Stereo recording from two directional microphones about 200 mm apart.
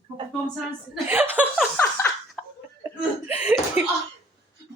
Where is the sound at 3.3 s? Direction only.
5° right (ahead or behind).